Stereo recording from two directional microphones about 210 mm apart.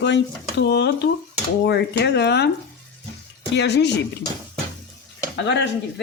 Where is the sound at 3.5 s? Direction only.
55° left (ahead or behind).